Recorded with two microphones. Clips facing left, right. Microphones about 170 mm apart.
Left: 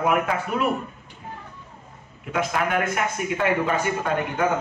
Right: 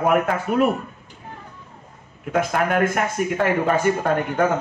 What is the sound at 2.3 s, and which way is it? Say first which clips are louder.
Speech: right 3 dB; 45° right (ahead or behind).